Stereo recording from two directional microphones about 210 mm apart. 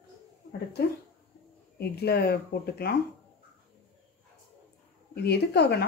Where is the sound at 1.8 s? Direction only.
50° left (ahead or behind).